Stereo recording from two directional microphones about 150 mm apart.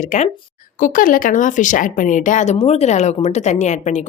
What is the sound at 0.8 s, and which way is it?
A woman's voice, 65° left (ahead or behind).